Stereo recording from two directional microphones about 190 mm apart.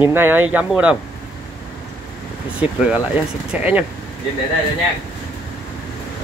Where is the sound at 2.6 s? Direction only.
5° right (ahead or behind).